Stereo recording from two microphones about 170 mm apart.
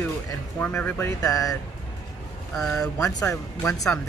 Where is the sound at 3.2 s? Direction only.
20° left (ahead or behind).